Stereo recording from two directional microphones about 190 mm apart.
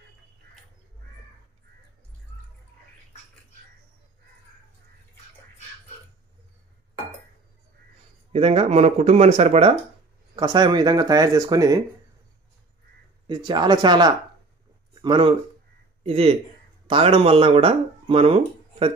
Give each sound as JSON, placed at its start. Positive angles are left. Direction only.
{"t": 8.3, "sound": "speech", "side_deg": -35}
{"t": 10.3, "sound": "speech", "side_deg": -20}
{"t": 13.3, "sound": "speech", "side_deg": -25}